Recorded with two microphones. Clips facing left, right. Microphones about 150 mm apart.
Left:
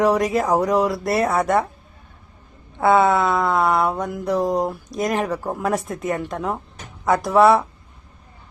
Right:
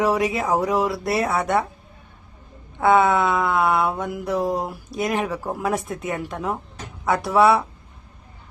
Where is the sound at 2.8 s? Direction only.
Centre (ahead or behind).